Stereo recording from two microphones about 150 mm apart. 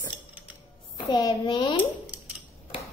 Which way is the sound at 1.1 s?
30° left (ahead or behind).